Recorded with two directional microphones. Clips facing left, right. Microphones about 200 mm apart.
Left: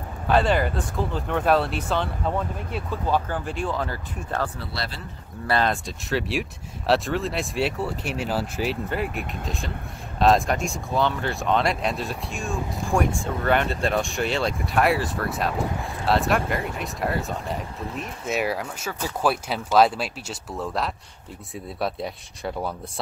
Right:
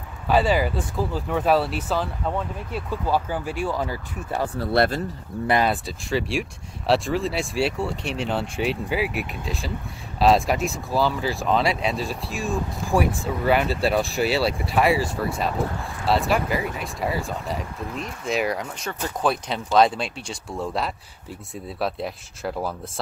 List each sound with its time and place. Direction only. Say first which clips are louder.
0.3 s speech: right 1 dB; 5° right (ahead or behind)
4.7 s speech: right 17 dB; 50° right (ahead or behind)
5.5 s speech: right 2 dB; 10° right (ahead or behind)